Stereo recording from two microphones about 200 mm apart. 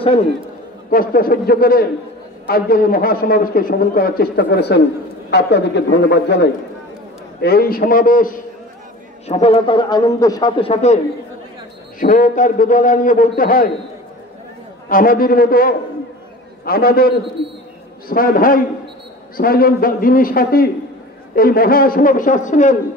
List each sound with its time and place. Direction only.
0.0 s a man's voice: 30° left (ahead or behind)
0.8 s a man's voice: 45° left (ahead or behind)
9.3 s a man's voice: 30° left (ahead or behind)
12.0 s a man's voice: 40° left (ahead or behind)
14.9 s a man's voice: 45° left (ahead or behind)